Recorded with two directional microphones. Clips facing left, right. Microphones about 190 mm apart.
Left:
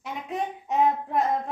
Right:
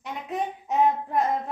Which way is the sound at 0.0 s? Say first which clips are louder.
Right 1 dB; centre (ahead or behind).